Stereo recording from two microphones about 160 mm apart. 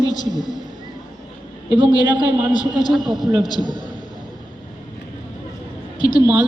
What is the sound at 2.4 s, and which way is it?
Speech, 5° right (ahead or behind).